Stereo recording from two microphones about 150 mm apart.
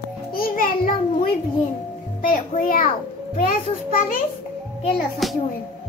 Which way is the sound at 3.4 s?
70° left (ahead or behind).